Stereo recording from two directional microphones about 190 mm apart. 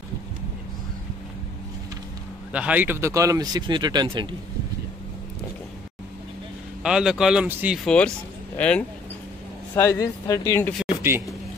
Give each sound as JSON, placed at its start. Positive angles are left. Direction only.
{"t": 2.5, "sound": "speech", "side_deg": -5}
{"t": 6.8, "sound": "speech", "side_deg": -5}
{"t": 11.0, "sound": "a man's voice", "side_deg": -10}